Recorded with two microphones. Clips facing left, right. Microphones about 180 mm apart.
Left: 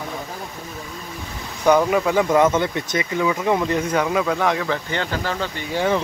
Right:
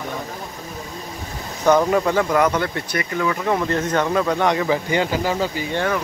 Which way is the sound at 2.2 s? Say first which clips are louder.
Left 2 dB; 20° left (ahead or behind).